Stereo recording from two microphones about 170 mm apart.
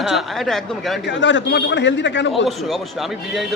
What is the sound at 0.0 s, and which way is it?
Speech, centre (ahead or behind).